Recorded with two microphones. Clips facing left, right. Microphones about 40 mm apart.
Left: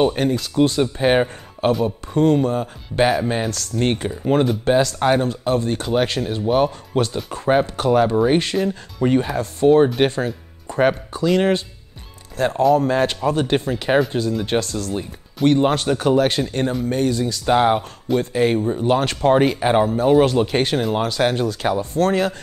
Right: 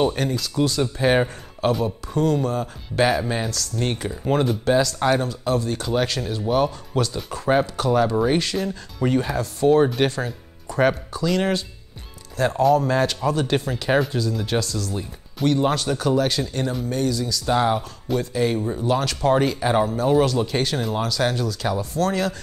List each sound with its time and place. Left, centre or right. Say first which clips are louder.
0.0 s speech: left 4 dB; left
1.7 s speech: left 3 dB; centre
2.1 s speech: left 5 dB; left
8.5 s speech: left 4 dB; centre
9.4 s speech: left 3 dB; left